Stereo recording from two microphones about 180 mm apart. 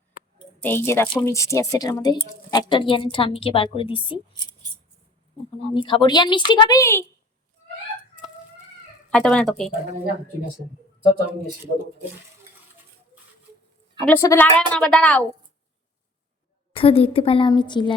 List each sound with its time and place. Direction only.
0.6 s a woman's voice: 15° left (ahead or behind); by 4.2 s 30° left (ahead or behind)
5.7 s a woman's voice: 25° left (ahead or behind)
9.0 s speech: 5° left (ahead or behind)
14.0 s a woman's voice: 15° left (ahead or behind)
16.7 s a woman's voice: 30° left (ahead or behind)